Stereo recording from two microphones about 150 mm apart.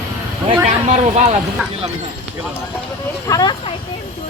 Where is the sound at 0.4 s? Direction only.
45° right (ahead or behind).